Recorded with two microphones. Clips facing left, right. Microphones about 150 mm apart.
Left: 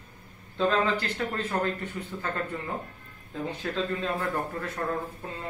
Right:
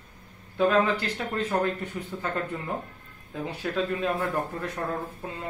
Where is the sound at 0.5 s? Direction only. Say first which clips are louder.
Right 3 dB; 15° right (ahead or behind).